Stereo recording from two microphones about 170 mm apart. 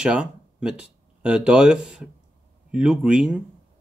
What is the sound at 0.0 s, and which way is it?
Speech, 5° right (ahead or behind).